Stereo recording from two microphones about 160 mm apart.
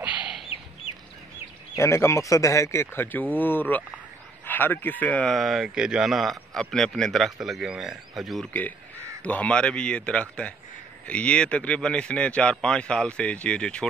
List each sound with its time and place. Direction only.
0.0 s chicken: 10° right (ahead or behind)
1.8 s speech: 15° left (ahead or behind)